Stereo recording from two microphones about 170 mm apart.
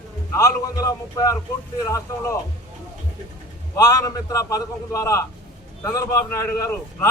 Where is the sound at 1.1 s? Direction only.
20° left (ahead or behind).